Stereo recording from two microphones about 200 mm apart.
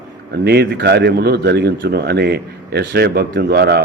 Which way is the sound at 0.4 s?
55° right (ahead or behind).